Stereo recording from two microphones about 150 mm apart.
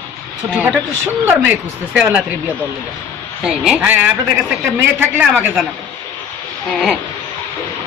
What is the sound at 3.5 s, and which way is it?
Speech, 5° right (ahead or behind).